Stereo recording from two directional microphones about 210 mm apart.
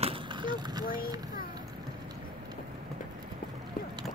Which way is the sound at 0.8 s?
40° left (ahead or behind).